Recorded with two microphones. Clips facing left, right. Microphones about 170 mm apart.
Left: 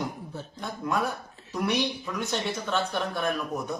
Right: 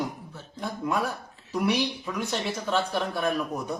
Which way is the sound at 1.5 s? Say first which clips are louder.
Right 2 dB; 5° right (ahead or behind).